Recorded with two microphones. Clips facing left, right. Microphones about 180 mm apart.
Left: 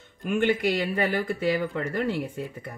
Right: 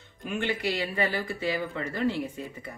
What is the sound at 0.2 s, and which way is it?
Speech, 50° left (ahead or behind).